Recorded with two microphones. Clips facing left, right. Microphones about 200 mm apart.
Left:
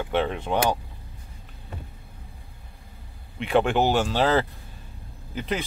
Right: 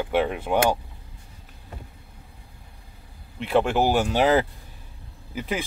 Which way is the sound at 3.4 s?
Centre (ahead or behind).